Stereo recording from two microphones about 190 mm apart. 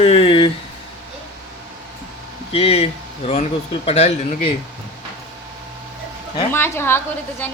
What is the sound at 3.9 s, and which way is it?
Speech, 35° left (ahead or behind).